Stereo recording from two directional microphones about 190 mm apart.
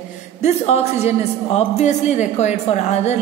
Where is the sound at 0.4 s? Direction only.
35° left (ahead or behind).